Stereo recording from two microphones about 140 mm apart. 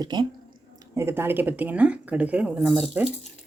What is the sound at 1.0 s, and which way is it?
Speech, 15° right (ahead or behind).